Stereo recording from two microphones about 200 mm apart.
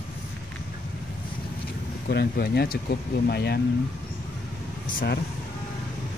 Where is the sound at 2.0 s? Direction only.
50° left (ahead or behind).